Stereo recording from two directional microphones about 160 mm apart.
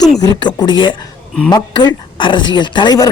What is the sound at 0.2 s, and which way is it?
A woman's voice, 25° left (ahead or behind).